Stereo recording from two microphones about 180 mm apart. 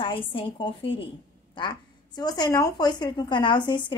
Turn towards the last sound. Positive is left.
turn(degrees=25)  # may be behind; listen again after turning